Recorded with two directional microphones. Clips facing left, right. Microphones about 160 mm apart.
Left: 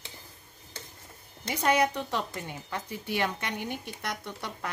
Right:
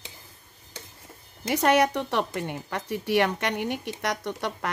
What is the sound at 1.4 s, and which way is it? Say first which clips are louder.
Speech: right 4 dB; 70° right (ahead or behind).